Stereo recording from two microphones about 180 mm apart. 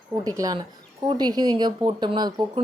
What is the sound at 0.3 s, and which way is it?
Speech, 20° right (ahead or behind).